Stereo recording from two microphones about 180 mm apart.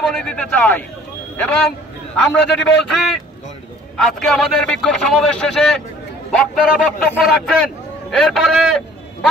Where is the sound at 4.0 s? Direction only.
5° left (ahead or behind).